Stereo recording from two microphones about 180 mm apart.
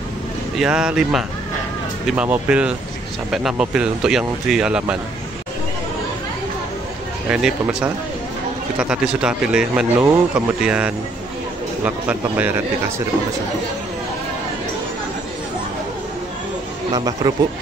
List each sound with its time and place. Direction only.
0.6 s a man's voice: 5° right (ahead or behind)
7.2 s a man's voice: 10° right (ahead or behind)
16.9 s speech: 20° right (ahead or behind)